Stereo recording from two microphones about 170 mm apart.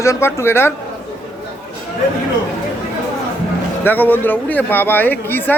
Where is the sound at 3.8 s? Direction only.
10° left (ahead or behind).